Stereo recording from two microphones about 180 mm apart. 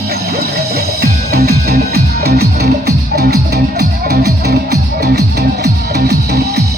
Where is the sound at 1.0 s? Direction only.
60° right (ahead or behind).